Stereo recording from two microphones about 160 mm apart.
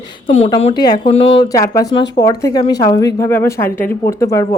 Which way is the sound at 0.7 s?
25° left (ahead or behind).